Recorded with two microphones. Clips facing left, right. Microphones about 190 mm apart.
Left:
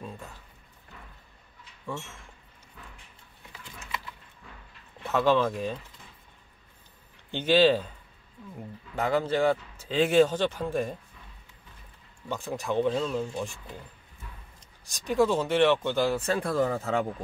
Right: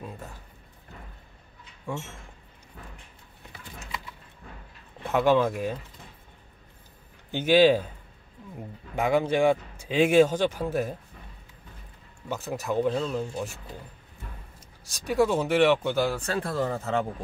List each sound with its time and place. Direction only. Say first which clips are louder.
0.0 s a sound: right 1 dB; 10° right (ahead or behind)
5.0 s speech: right 2 dB; 10° right (ahead or behind)
7.2 s speech: right 2 dB; 10° right (ahead or behind)
8.9 s speech: right 2 dB; 15° right (ahead or behind)
12.3 s speech: right 1 dB; 5° right (ahead or behind)
14.9 s speech: right 1 dB; 10° right (ahead or behind)
16.2 s speech: left 2 dB; 10° left (ahead or behind)